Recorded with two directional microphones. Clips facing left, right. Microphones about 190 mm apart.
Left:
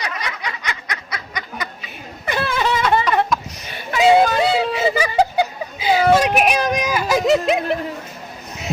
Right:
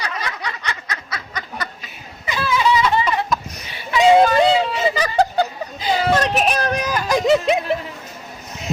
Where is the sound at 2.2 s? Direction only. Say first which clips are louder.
Right 1 dB; 55° left (ahead or behind).